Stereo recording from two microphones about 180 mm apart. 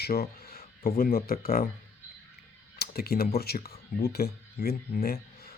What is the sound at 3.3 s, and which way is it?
Speech, 60° left (ahead or behind).